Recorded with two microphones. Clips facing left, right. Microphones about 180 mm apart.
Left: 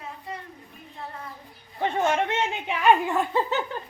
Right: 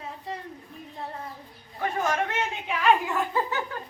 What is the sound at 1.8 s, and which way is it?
A man's voice, 25° left (ahead or behind).